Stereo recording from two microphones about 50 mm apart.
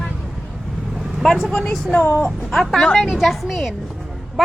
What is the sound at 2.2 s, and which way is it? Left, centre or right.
A woman's voice, centre.